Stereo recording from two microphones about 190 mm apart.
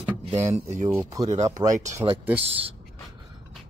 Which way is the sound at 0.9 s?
15° right (ahead or behind).